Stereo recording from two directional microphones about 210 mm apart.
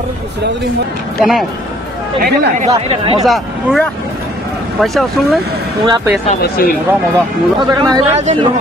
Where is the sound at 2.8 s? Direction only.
30° right (ahead or behind).